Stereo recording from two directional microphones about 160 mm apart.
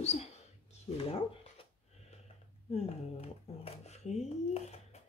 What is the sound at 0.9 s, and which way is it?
Speech, 35° left (ahead or behind).